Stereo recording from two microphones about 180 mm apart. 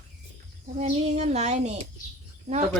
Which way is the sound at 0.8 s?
40° right (ahead or behind).